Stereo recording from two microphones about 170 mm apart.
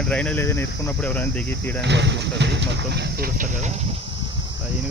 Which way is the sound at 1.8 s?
90° right.